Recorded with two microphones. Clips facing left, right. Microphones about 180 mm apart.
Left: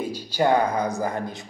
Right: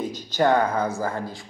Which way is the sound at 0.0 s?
10° left (ahead or behind).